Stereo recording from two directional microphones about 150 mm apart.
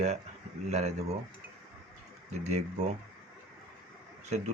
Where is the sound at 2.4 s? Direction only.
45° right (ahead or behind).